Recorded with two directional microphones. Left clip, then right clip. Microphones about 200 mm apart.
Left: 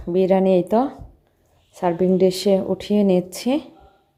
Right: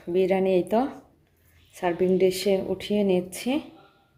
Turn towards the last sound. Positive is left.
turn(degrees=20)  # may be behind; listen again after turning